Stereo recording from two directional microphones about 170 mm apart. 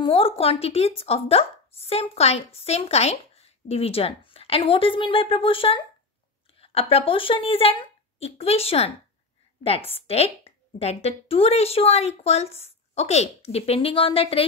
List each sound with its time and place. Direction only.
0.0 s speech: 30° left (ahead or behind)